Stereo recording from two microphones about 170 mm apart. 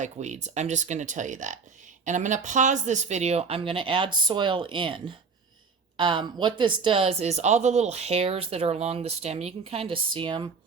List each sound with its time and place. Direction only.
0.0 s speech: 45° right (ahead or behind); by 10.5 s 30° right (ahead or behind)